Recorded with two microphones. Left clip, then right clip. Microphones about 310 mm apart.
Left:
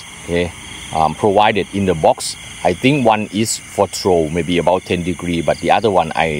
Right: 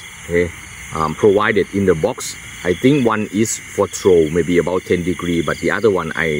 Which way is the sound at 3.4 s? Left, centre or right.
Centre.